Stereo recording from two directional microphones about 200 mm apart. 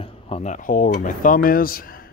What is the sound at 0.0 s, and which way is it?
Speech, 30° left (ahead or behind).